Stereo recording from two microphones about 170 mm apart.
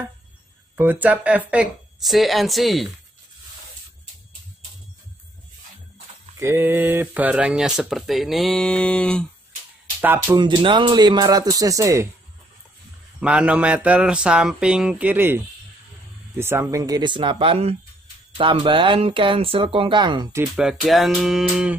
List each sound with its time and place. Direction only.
0.7 s speech: 10° right (ahead or behind)
6.3 s speech: 15° right (ahead or behind); by 9.3 s 5° left (ahead or behind)
10.0 s a sound: 15° right (ahead or behind)
10.3 s speech: 25° right (ahead or behind)
13.2 s a sound: 5° right (ahead or behind)
16.3 s speech: 15° right (ahead or behind)
20.5 s speech: centre (ahead or behind)